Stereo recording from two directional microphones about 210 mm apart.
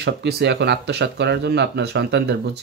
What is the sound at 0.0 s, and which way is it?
Speech, 55° right (ahead or behind).